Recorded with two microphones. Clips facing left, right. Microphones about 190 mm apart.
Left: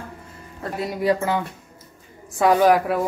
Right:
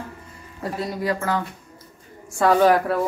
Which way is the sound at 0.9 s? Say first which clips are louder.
Left 4 dB; 20° left (ahead or behind).